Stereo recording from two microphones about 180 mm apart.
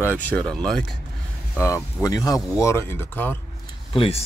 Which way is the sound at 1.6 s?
15° left (ahead or behind).